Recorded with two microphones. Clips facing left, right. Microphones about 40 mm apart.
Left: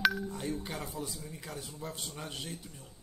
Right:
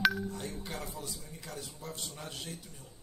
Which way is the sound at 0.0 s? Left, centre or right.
Centre.